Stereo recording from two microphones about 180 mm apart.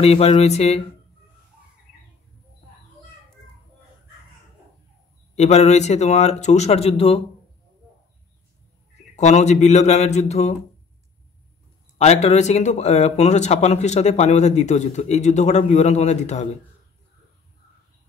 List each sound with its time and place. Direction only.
0.0 s speech: 35° left (ahead or behind)
5.3 s speech: 40° left (ahead or behind)
9.1 s speech: 40° left (ahead or behind)
12.0 s speech: 40° left (ahead or behind)